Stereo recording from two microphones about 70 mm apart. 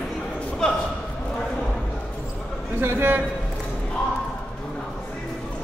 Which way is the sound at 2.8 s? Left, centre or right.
Right.